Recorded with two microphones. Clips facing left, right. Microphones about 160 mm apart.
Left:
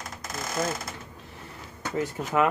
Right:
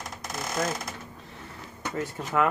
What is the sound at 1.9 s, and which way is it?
Speech, 15° left (ahead or behind).